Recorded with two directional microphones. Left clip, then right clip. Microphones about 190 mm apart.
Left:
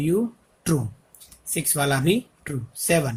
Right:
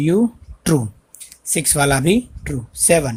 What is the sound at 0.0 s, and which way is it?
Speech, 35° right (ahead or behind).